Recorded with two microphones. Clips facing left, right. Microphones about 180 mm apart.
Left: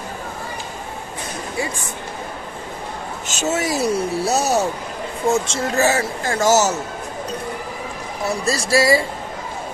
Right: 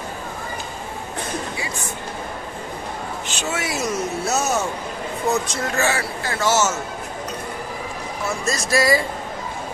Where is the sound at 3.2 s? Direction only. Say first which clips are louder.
Left 7 dB; 40° left (ahead or behind).